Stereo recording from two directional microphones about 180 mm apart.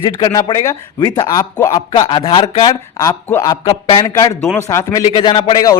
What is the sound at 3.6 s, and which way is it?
Speech, 25° left (ahead or behind).